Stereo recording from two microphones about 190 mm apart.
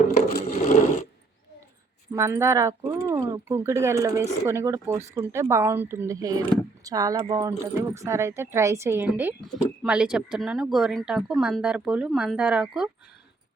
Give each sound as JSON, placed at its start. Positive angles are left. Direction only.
{"t": 0.3, "sound": "wood", "side_deg": 50}
{"t": 2.1, "sound": "speech", "side_deg": -15}